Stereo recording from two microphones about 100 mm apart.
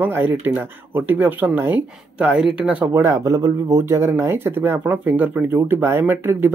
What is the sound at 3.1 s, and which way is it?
Speech, 35° right (ahead or behind).